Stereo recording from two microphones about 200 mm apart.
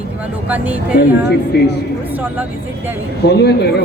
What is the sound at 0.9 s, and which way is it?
Speech, 50° left (ahead or behind).